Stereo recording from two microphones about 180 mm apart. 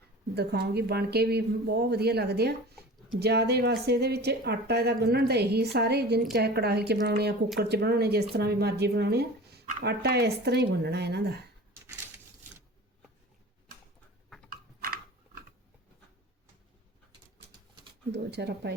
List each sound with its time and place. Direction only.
0.3 s speech: 65° right (ahead or behind)
14.5 s a sound: 55° right (ahead or behind)
18.1 s speech: 70° right (ahead or behind)